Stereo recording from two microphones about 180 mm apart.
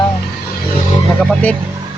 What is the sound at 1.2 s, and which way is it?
Speech, 5° left (ahead or behind).